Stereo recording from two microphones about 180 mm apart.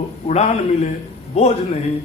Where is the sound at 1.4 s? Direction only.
35° left (ahead or behind).